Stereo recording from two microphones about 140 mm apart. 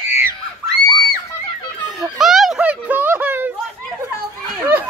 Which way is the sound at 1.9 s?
Centre (ahead or behind).